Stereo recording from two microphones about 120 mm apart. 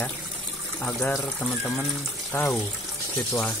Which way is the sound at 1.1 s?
20° left (ahead or behind).